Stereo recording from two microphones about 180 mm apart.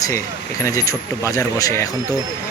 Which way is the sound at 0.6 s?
15° left (ahead or behind).